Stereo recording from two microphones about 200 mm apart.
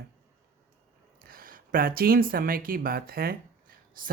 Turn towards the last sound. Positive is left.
turn(degrees=-50)  # may be behind; listen again after turning